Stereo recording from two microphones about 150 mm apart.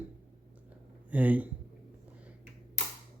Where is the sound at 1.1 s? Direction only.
10° right (ahead or behind).